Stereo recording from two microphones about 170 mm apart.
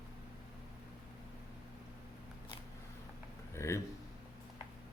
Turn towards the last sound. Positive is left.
turn(degrees=15)  # may be behind; listen again after turning